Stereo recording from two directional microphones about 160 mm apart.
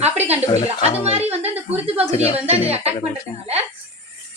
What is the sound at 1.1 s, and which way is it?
A woman's voice, 40° right (ahead or behind).